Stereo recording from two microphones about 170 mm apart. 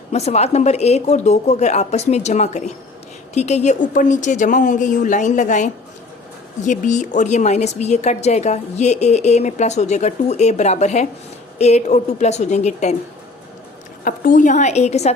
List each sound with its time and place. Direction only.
0.1 s a woman's voice: 40° left (ahead or behind)
14.0 s a woman's voice: 50° left (ahead or behind)